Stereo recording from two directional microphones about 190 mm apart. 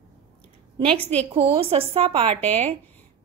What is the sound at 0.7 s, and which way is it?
A woman's voice, 30° right (ahead or behind).